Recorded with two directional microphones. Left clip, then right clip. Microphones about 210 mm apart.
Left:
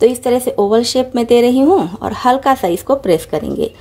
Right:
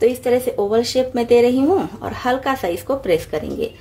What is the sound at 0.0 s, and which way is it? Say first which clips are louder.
A woman's voice: left 4 dB; 35° left (ahead or behind).